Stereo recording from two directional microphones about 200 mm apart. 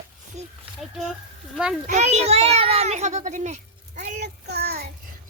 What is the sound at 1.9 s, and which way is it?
A child's voice, 35° right (ahead or behind).